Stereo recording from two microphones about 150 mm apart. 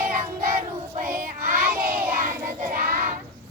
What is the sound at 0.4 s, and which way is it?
Child singing, 65° right (ahead or behind).